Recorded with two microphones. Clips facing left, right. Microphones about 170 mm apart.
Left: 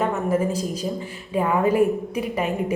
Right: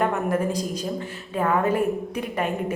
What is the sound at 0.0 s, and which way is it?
A woman's voice, 5° left (ahead or behind).